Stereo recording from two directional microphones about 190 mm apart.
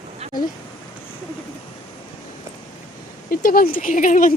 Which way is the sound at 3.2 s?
50° left (ahead or behind).